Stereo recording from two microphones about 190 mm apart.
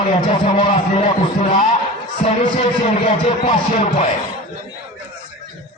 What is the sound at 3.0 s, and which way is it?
A man's voice, 35° left (ahead or behind).